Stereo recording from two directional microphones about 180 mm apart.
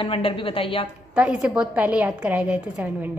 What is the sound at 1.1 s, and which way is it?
A woman's voice, 5° right (ahead or behind).